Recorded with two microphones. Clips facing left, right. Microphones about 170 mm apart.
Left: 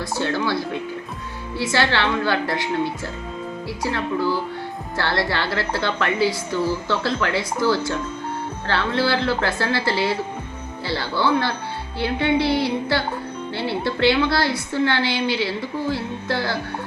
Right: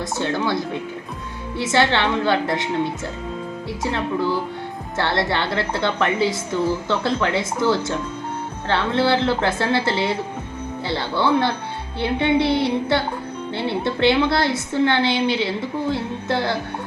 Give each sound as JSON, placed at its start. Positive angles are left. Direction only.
{"t": 0.0, "sound": "a woman's voice", "side_deg": -20}